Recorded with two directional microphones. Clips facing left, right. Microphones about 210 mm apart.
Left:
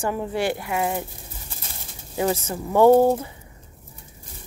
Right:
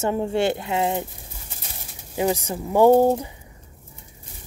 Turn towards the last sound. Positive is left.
turn(degrees=-15)  # may be behind; listen again after turning